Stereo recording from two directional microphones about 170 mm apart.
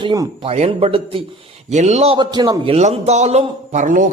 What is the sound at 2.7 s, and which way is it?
A man's voice, 40° right (ahead or behind).